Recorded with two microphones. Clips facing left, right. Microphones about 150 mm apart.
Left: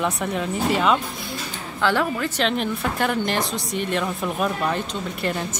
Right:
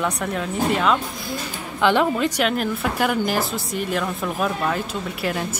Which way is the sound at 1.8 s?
20° right (ahead or behind).